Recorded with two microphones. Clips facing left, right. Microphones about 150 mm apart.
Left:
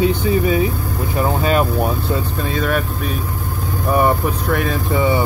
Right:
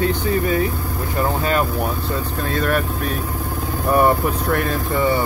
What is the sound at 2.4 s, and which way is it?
Speech, 5° left (ahead or behind).